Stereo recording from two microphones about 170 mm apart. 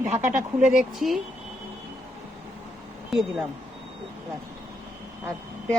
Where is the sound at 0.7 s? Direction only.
Centre (ahead or behind).